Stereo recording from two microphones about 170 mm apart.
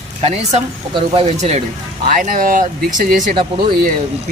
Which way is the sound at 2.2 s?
50° right (ahead or behind).